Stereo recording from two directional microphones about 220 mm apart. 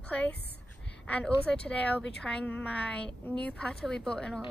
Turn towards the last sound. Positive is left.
turn(degrees=5)  # may be behind; listen again after turning